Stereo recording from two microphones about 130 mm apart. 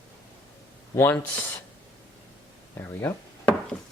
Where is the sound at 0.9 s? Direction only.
20° left (ahead or behind).